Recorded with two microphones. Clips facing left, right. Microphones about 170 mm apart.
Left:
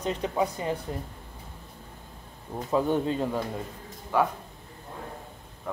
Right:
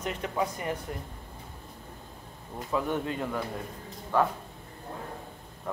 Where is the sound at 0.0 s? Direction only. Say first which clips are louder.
Left 3 dB; 30° left (ahead or behind).